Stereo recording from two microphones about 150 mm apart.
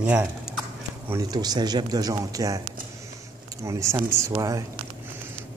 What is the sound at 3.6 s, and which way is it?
Speech, 20° right (ahead or behind).